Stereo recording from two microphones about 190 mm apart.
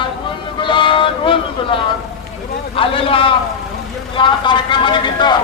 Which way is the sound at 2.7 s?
30° left (ahead or behind).